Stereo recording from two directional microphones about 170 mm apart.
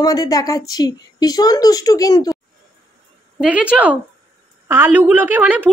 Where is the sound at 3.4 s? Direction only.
5° right (ahead or behind).